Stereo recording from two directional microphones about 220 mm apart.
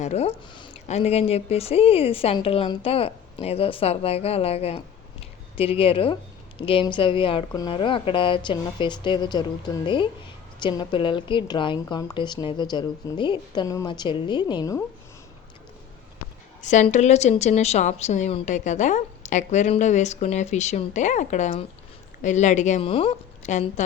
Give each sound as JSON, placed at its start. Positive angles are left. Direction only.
{"t": 0.0, "sound": "speech", "side_deg": 30}
{"t": 16.6, "sound": "a woman's voice", "side_deg": 35}